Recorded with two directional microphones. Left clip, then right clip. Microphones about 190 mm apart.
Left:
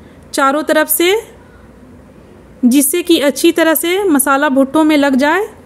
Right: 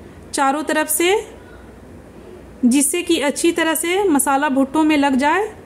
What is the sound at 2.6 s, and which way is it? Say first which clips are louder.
A woman's voice: left 5 dB; 20° left (ahead or behind).